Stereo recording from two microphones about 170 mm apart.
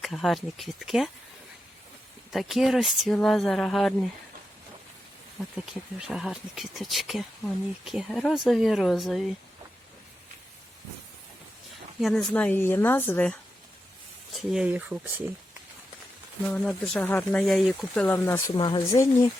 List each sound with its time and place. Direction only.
0.0 s speech: centre (ahead or behind)
2.3 s speech: centre (ahead or behind)
5.4 s speech: 5° right (ahead or behind)
11.9 s speech: centre (ahead or behind)
14.3 s speech: 5° right (ahead or behind)
16.5 s speech: 5° left (ahead or behind)
18.5 s speech: 25° left (ahead or behind)